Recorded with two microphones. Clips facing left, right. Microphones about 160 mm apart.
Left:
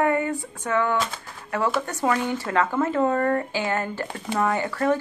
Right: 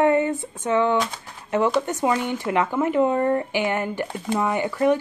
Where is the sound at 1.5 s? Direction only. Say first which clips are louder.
Right 4 dB; 20° right (ahead or behind).